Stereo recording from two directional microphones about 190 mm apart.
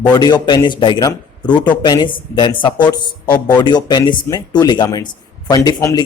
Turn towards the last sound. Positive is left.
turn(degrees=20)  # may be behind; listen again after turning